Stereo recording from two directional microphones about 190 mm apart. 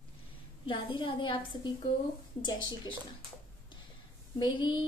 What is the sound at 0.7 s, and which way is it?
A woman's voice, 25° left (ahead or behind).